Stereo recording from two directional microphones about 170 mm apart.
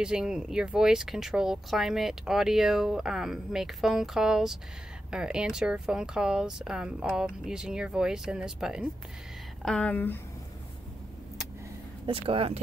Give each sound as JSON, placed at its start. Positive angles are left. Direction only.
{"t": 0.0, "sound": "speech", "side_deg": -5}
{"t": 9.7, "sound": "speech", "side_deg": 5}
{"t": 12.1, "sound": "speech", "side_deg": -35}